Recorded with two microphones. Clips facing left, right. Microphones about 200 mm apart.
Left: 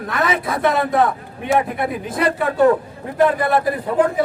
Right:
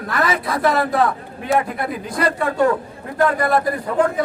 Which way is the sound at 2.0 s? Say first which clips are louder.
Even; 5° left (ahead or behind).